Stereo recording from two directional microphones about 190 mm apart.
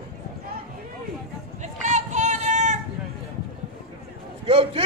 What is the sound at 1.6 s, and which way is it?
Run, 40° right (ahead or behind).